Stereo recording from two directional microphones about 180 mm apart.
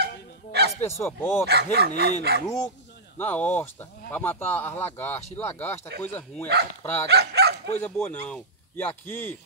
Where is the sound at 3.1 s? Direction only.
10° left (ahead or behind).